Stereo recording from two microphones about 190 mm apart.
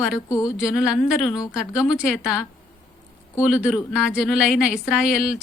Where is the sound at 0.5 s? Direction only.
Centre (ahead or behind).